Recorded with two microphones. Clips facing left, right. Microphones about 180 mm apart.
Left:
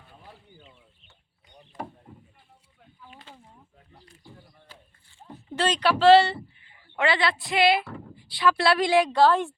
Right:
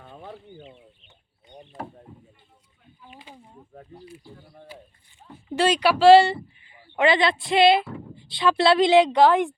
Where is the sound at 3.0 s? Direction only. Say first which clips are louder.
Right 2 dB; 15° right (ahead or behind).